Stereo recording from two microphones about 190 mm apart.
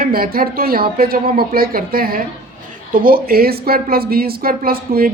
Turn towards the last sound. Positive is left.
turn(degrees=-50)  # may be behind; listen again after turning